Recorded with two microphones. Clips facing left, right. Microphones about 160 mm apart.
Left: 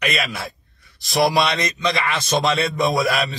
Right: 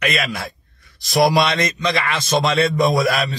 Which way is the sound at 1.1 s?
45° right (ahead or behind).